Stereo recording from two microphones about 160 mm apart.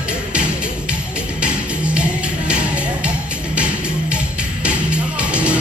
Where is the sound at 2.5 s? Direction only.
5° right (ahead or behind).